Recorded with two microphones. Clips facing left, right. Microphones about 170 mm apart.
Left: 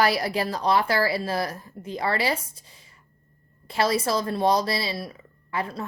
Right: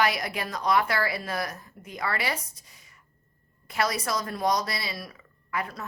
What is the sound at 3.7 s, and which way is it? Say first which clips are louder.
Speech: left 5 dB; 30° left (ahead or behind).